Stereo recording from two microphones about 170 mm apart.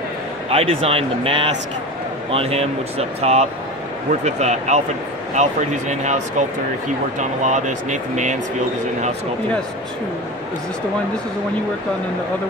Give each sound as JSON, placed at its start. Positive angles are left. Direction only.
{"t": 0.5, "sound": "speech", "side_deg": -35}